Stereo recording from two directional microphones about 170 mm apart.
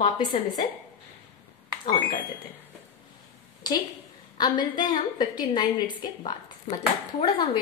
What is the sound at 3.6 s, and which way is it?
A woman's voice, 25° left (ahead or behind).